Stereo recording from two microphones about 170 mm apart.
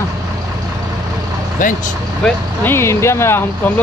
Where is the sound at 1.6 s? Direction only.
50° left (ahead or behind).